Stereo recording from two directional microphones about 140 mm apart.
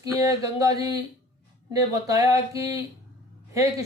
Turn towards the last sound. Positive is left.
turn(degrees=-20)  # may be behind; listen again after turning